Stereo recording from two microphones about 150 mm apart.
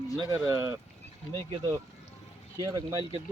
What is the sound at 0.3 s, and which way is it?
Speech, 20° right (ahead or behind).